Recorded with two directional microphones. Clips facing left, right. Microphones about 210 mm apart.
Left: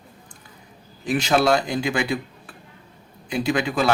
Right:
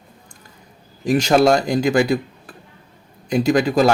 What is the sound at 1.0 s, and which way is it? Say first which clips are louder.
Speech: right 5 dB; 40° right (ahead or behind).